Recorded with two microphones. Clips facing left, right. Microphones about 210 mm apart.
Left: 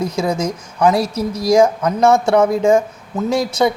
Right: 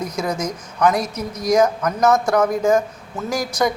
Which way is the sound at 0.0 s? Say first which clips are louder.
Left 5 dB; 30° left (ahead or behind).